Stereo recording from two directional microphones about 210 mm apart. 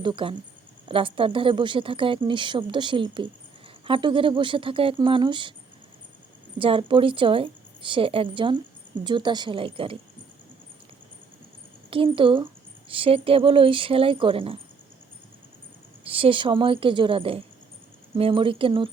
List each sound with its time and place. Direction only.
0.0 s speech: 25° right (ahead or behind)
6.6 s speech: 25° right (ahead or behind)
11.9 s speech: 25° right (ahead or behind)
16.0 s speech: 25° right (ahead or behind)